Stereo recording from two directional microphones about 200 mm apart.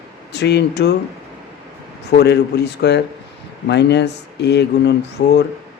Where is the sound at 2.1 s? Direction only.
55° left (ahead or behind).